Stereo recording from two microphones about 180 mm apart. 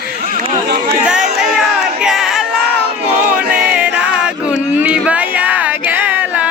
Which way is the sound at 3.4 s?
5° right (ahead or behind).